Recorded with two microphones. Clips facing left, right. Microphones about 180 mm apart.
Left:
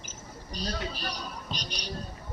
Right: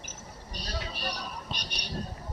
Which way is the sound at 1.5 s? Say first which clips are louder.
Left 2 dB; 60° right (ahead or behind).